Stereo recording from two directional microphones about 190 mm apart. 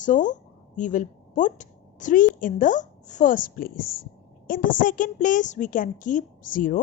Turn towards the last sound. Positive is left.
turn(degrees=45)  # may be behind; listen again after turning